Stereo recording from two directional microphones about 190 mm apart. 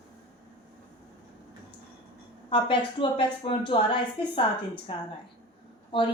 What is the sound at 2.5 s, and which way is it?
A woman's voice, 25° left (ahead or behind).